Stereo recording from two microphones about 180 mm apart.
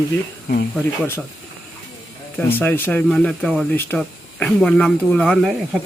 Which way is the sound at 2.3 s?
10° left (ahead or behind).